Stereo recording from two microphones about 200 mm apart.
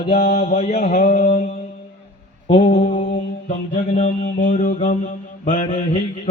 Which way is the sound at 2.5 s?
25° left (ahead or behind).